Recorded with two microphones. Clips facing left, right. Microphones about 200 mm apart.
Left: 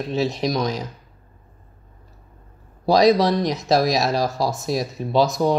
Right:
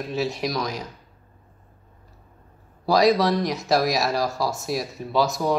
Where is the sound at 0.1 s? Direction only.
20° left (ahead or behind).